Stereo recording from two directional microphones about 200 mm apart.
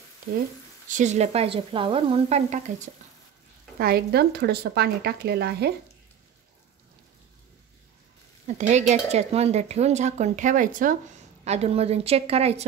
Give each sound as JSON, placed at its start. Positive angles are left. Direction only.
{"t": 0.8, "sound": "speech", "side_deg": -35}
{"t": 3.7, "sound": "speech", "side_deg": -50}
{"t": 8.5, "sound": "speech", "side_deg": -35}